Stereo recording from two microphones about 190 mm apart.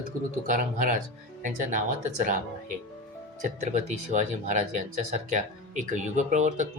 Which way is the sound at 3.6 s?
40° right (ahead or behind).